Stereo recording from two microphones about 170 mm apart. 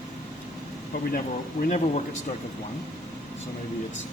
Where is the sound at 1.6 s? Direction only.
40° left (ahead or behind).